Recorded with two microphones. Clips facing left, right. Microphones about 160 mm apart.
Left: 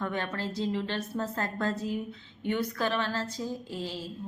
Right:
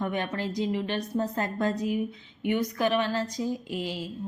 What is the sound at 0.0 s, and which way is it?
A woman's voice, 15° right (ahead or behind).